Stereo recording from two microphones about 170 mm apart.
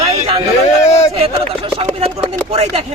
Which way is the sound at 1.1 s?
35° right (ahead or behind).